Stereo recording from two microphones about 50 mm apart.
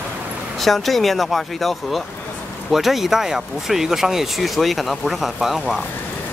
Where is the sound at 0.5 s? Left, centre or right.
Centre.